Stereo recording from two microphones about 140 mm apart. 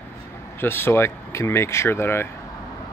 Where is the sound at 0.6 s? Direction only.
15° left (ahead or behind).